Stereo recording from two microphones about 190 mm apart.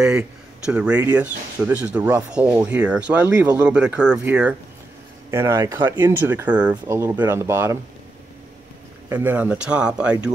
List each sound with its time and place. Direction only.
0.0 s speech: 5° right (ahead or behind)
9.1 s speech: 10° right (ahead or behind)